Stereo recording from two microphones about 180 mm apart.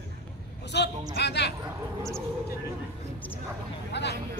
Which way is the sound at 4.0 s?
70° left (ahead or behind).